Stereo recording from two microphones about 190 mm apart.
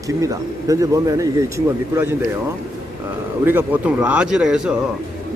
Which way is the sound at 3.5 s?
10° right (ahead or behind).